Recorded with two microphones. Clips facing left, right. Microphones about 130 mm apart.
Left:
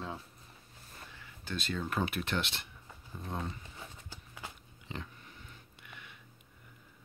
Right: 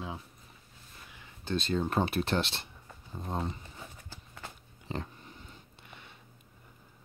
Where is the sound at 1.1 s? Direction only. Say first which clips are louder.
Right 7 dB; 25° right (ahead or behind).